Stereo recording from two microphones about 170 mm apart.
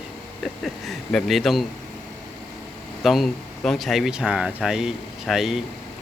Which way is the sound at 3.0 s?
Centre (ahead or behind).